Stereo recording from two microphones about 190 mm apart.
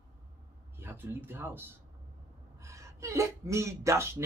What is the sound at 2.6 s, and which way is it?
Speech, 15° right (ahead or behind).